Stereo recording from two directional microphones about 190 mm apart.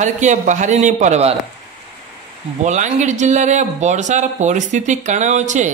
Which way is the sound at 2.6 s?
40° right (ahead or behind).